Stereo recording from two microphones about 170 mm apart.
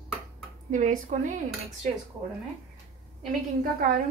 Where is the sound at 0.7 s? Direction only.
50° right (ahead or behind).